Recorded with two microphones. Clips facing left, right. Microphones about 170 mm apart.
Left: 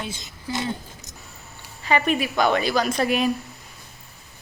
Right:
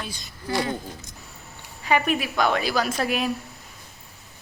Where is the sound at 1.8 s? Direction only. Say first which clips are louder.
Left 1 dB; 10° right (ahead or behind).